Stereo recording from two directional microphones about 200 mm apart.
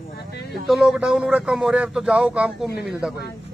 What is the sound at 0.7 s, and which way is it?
Speech, centre (ahead or behind).